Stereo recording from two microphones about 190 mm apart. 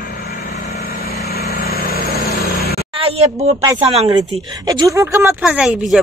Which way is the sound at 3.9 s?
35° right (ahead or behind).